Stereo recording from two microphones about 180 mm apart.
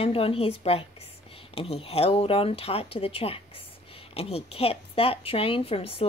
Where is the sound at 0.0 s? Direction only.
30° left (ahead or behind).